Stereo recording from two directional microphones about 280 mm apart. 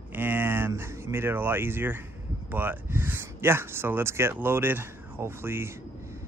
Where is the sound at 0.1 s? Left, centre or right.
Centre.